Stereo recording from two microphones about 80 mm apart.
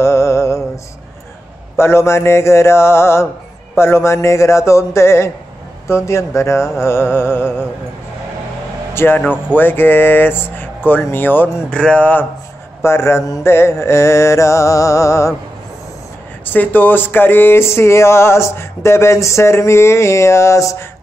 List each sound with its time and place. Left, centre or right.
0.0 s music: left
1.8 s speech: left
8.9 s speech: left
11.7 s a sound: centre
12.8 s speech: left
16.4 s speech: left